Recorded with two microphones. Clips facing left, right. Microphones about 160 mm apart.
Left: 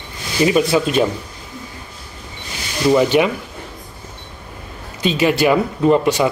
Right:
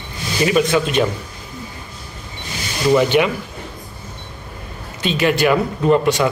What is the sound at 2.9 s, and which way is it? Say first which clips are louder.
Speech: left 1 dB; 10° left (ahead or behind).